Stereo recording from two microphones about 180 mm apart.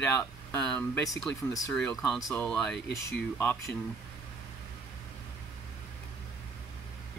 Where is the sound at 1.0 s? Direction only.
20° left (ahead or behind).